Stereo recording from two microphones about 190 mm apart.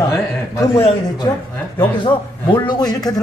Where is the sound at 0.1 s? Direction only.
15° left (ahead or behind).